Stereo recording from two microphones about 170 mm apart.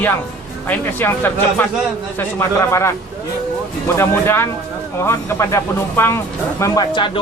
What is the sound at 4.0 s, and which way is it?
Speech, 15° left (ahead or behind).